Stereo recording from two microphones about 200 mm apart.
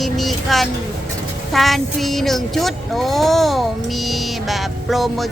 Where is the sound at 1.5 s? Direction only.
Centre (ahead or behind).